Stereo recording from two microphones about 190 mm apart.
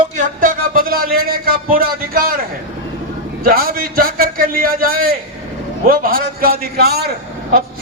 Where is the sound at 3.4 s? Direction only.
50° right (ahead or behind).